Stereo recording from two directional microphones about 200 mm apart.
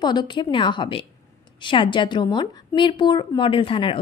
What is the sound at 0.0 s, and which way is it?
A woman's voice, 20° left (ahead or behind).